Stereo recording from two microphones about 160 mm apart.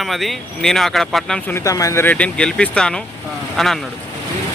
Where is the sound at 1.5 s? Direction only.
20° left (ahead or behind); by 3.8 s centre (ahead or behind).